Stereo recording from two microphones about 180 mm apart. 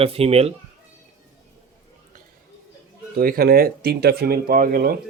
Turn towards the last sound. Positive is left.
turn(degrees=-55)  # may be behind; listen again after turning